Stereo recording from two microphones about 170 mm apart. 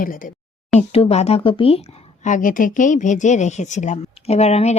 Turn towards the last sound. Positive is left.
turn(degrees=40)  # may be behind; listen again after turning